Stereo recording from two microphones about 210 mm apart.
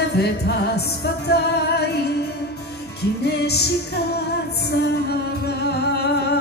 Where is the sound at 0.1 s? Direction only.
50° left (ahead or behind).